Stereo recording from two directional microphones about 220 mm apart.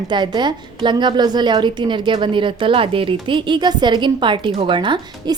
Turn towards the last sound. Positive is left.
turn(degrees=-20)  # may be behind; listen again after turning